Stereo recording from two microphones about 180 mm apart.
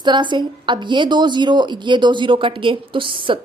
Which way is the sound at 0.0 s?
25° right (ahead or behind).